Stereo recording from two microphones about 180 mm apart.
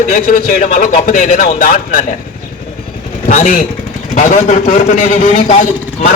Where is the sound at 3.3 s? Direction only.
50° left (ahead or behind).